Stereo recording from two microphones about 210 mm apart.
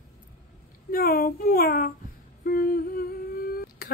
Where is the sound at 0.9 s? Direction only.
45° left (ahead or behind).